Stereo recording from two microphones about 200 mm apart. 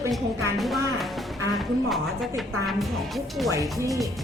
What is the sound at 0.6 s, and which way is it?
Speech, centre (ahead or behind).